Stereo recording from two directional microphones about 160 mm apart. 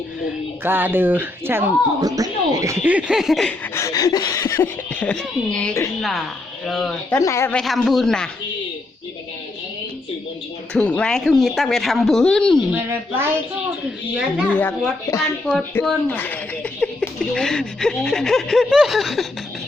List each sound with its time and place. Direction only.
0.6 s speech: 10° right (ahead or behind)
2.8 s speech: 5° right (ahead or behind)
3.8 s speech: 20° left (ahead or behind); by 7.2 s centre (ahead or behind)
7.2 s speech: 20° left (ahead or behind)
7.5 s speech: centre (ahead or behind)
10.8 s speech: 5° left (ahead or behind)
12.7 s speech: 15° right (ahead or behind)
14.5 s speech: 15° left (ahead or behind)